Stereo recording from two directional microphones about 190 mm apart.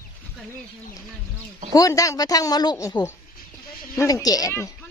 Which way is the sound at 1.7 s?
15° left (ahead or behind).